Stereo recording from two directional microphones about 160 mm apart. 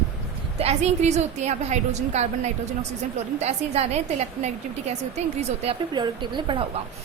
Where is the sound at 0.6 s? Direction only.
40° right (ahead or behind).